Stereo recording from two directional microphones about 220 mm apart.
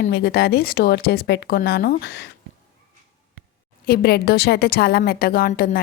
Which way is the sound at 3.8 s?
45° left (ahead or behind).